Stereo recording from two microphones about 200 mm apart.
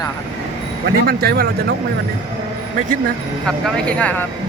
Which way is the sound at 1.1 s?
50° right (ahead or behind).